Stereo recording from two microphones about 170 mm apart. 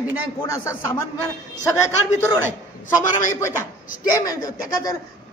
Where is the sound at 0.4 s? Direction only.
15° left (ahead or behind).